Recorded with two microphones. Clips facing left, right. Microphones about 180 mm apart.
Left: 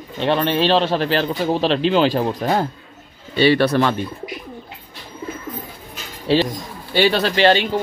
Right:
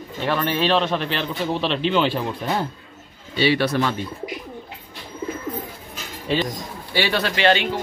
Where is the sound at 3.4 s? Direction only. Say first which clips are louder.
Left 5 dB; 55° left (ahead or behind).